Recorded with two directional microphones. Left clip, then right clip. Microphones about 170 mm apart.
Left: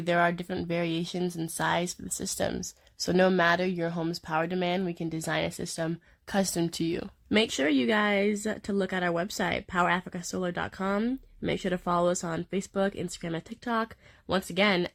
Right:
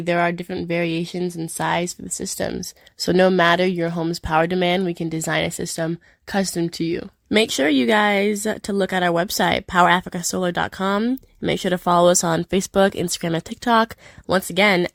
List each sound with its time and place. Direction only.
0.0 s speech: 20° right (ahead or behind)
6.3 s speech: 20° right (ahead or behind)
7.3 s speech: 35° right (ahead or behind); by 13.9 s 55° right (ahead or behind)
14.3 s speech: 40° right (ahead or behind)